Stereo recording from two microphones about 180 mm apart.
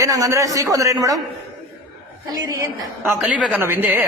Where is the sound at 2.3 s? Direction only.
20° right (ahead or behind).